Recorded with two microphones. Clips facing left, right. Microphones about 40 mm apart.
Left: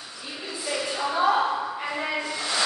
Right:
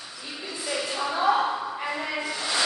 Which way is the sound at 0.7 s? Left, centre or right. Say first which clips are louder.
Left 1 dB; centre.